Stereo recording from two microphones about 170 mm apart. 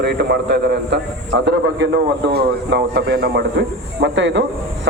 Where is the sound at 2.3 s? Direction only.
75° right (ahead or behind).